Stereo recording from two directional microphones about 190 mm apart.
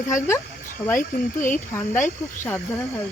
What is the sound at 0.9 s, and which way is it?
Speech, 45° left (ahead or behind).